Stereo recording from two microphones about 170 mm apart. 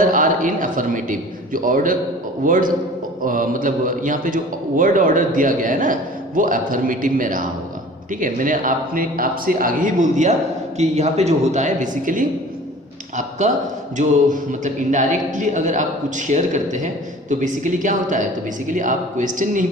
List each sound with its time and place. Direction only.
0.1 s a man's voice: 50° right (ahead or behind)
14.6 s a man's voice: 45° right (ahead or behind)